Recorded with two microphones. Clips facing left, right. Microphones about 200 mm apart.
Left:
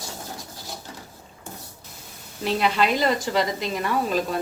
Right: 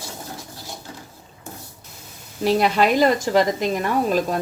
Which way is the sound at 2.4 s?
45° right (ahead or behind).